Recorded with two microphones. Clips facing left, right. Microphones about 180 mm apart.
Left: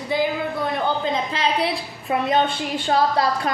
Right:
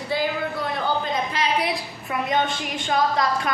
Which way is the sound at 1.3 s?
30° left (ahead or behind).